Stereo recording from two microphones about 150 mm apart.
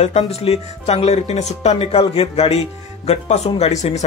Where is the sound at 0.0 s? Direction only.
45° left (ahead or behind).